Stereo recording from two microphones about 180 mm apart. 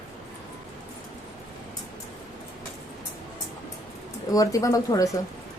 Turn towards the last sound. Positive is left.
turn(degrees=20)  # may be behind; listen again after turning